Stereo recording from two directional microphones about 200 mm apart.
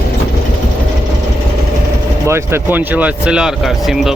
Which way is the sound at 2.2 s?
10° right (ahead or behind).